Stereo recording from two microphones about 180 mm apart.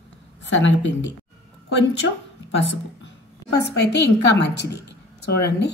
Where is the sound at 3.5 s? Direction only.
65° left (ahead or behind).